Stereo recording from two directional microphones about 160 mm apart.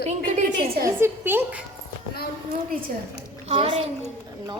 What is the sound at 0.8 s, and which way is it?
Speech, 15° right (ahead or behind).